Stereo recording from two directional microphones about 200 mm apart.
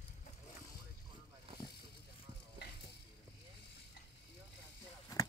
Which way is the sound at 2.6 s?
55° left (ahead or behind).